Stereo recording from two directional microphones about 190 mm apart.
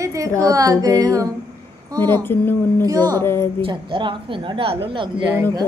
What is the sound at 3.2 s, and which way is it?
Speech, 10° left (ahead or behind).